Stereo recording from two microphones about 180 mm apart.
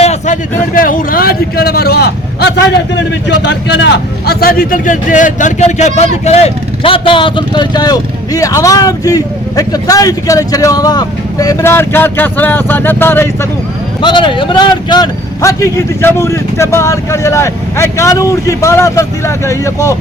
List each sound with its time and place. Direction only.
0.0 s a sound: 40° left (ahead or behind)
0.7 s a man's voice: 50° left (ahead or behind); by 13.5 s 15° left (ahead or behind)
14.0 s a man's voice: 25° left (ahead or behind)